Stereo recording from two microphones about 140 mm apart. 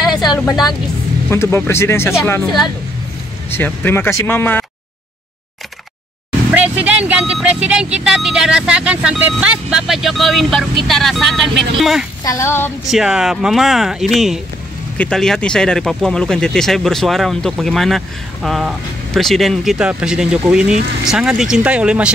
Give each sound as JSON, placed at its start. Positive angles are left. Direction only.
{"t": 1.3, "sound": "speech", "side_deg": 20}
{"t": 3.5, "sound": "speech", "side_deg": 15}
{"t": 6.5, "sound": "speech", "side_deg": -10}
{"t": 12.2, "sound": "speech", "side_deg": 20}
{"t": 12.8, "sound": "speech", "side_deg": -5}